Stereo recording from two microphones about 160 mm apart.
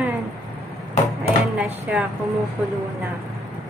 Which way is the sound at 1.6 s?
5° right (ahead or behind).